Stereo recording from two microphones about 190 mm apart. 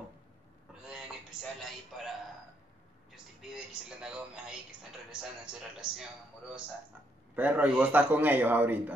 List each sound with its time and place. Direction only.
1.6 s a man's voice: centre (ahead or behind)
7.3 s a man's voice: 10° right (ahead or behind)